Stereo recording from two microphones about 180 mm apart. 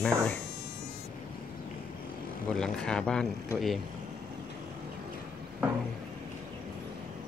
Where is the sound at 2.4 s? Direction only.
5° left (ahead or behind).